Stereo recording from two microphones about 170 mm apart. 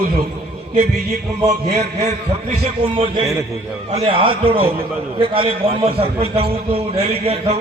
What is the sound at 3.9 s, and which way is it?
A man's voice, 30° right (ahead or behind).